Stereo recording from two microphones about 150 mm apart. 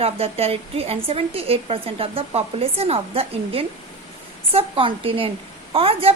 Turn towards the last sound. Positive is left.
turn(degrees=-40)  # may be behind; listen again after turning